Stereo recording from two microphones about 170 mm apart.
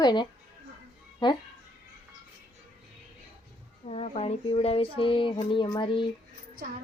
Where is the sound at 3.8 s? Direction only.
35° left (ahead or behind).